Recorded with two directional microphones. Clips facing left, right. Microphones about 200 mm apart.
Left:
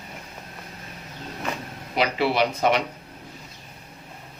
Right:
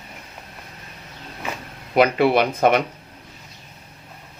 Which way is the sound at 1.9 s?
55° right (ahead or behind).